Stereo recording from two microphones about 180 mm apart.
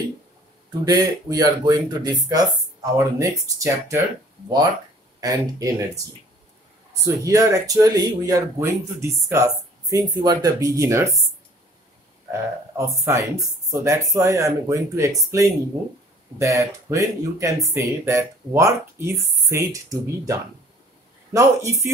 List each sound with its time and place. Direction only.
0.8 s speech: 20° right (ahead or behind)
5.2 s speech: 20° right (ahead or behind)
12.3 s speech: 15° right (ahead or behind)